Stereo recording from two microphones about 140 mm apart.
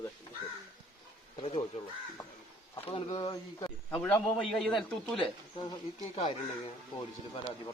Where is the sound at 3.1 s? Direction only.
25° left (ahead or behind).